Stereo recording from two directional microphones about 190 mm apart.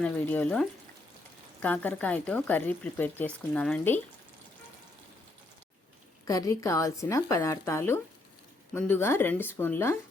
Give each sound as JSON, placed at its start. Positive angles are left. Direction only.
{"t": 0.0, "sound": "speech", "side_deg": 10}
{"t": 6.2, "sound": "speech", "side_deg": 15}